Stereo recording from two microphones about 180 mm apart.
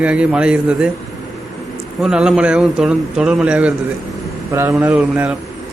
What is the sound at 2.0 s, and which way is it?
A man's voice, 5° right (ahead or behind).